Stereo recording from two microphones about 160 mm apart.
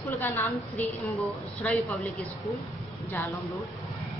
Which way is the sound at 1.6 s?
10° left (ahead or behind).